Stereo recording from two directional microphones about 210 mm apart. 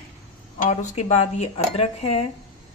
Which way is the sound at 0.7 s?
35° left (ahead or behind).